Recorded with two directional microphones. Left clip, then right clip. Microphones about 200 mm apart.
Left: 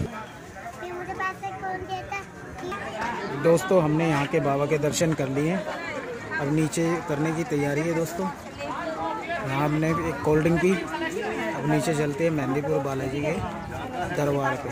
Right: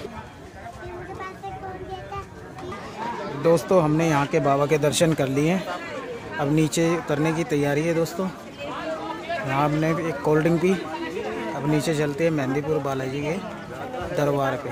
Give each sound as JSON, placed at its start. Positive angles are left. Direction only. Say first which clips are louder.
{"t": 3.4, "sound": "speech", "louder": "right 2 dB", "side_deg": 0}
{"t": 9.5, "sound": "speech", "louder": "right 3 dB", "side_deg": 0}